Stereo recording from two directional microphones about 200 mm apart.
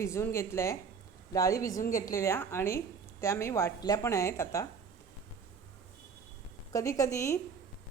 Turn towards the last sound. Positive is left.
turn(degrees=15)  # may be behind; listen again after turning